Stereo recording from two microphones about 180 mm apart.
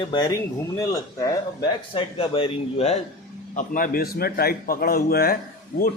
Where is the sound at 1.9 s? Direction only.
30° left (ahead or behind).